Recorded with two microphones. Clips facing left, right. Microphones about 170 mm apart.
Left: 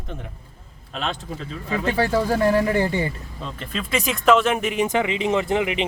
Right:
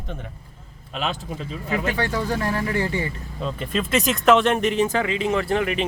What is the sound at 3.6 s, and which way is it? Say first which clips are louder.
Speech: right 3 dB; 5° right (ahead or behind).